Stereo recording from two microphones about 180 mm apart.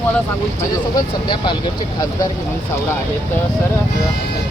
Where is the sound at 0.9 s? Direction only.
25° left (ahead or behind).